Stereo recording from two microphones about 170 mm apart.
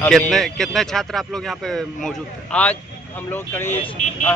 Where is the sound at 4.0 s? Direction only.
45° left (ahead or behind).